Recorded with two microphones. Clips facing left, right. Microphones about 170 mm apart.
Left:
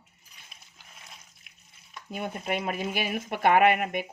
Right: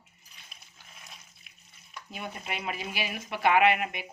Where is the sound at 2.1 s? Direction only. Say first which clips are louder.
Left 7 dB; 50° left (ahead or behind).